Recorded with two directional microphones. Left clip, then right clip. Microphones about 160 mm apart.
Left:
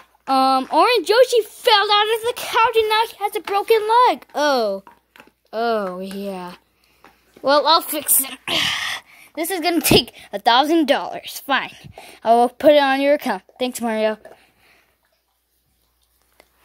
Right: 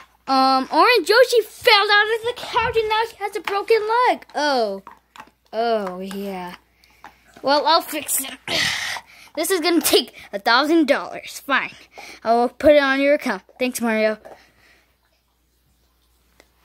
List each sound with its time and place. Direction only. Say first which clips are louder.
0.3 s speech: left 1 dB; centre (ahead or behind)
2.0 s a woman's voice: even; 30° left (ahead or behind); by 7.8 s 10° left (ahead or behind)
8.0 s speech: left 3 dB; 35° left (ahead or behind)
8.5 s a sound: left 1 dB; 5° left (ahead or behind)
9.3 s speech: right 1 dB; 10° right (ahead or behind)